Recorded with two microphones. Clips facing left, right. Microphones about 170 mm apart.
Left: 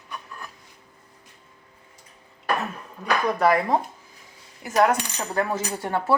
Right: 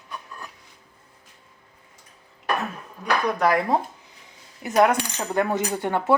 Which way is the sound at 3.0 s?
Centre (ahead or behind).